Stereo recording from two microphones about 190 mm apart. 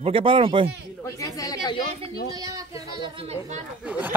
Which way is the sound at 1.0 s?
15° left (ahead or behind).